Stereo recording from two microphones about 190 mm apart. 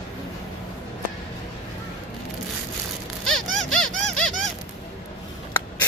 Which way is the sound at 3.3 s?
Centre (ahead or behind).